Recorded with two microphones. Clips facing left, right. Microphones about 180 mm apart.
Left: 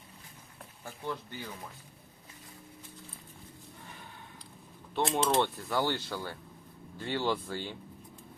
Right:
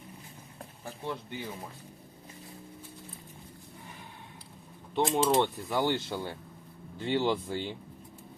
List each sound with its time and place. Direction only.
0.6 s speech: 25° right (ahead or behind)
4.9 s speech: 15° right (ahead or behind)